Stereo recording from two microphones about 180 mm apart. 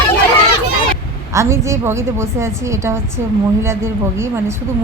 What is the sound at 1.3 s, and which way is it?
A woman's voice, 15° right (ahead or behind).